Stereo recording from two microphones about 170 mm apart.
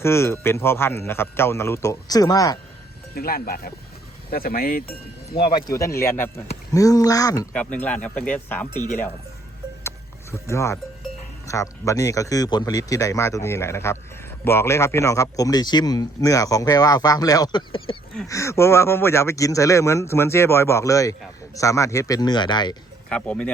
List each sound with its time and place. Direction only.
0.0 s speech: 15° left (ahead or behind)
3.2 s speech: 60° left (ahead or behind)
5.4 s a man's voice: 30° left (ahead or behind)
5.7 s a man's voice: 15° left (ahead or behind)
7.8 s speech: 10° left (ahead or behind)
10.3 s a man's voice: 15° left (ahead or behind)
18.3 s speech: 15° left (ahead or behind)
23.0 s speech: 5° left (ahead or behind)